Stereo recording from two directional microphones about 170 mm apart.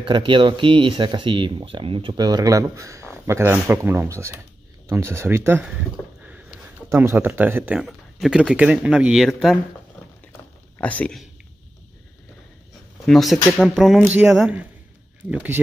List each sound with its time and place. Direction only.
0.0 s speech: 30° right (ahead or behind); by 5.7 s 15° right (ahead or behind)
6.9 s speech: 15° right (ahead or behind)
10.8 s speech: 10° left (ahead or behind)
13.0 s speech: centre (ahead or behind)